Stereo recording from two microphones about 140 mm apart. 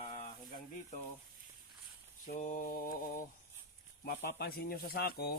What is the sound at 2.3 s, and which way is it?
Mantra, 65° left (ahead or behind).